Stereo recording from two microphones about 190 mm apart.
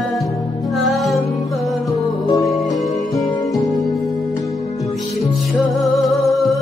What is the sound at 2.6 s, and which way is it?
Music, centre (ahead or behind).